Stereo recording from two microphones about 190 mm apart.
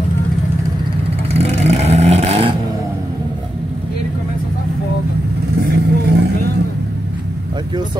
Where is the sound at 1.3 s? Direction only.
35° right (ahead or behind).